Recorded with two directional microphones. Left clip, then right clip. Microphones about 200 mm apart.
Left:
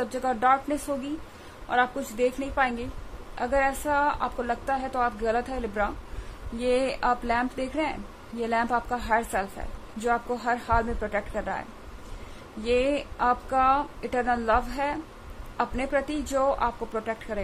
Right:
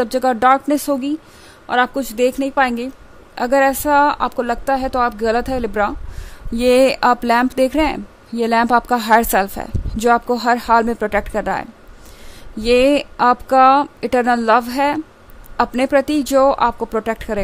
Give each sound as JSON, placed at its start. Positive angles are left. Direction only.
{"t": 0.0, "sound": "a woman's voice", "side_deg": -55}
{"t": 12.6, "sound": "a woman's voice", "side_deg": -55}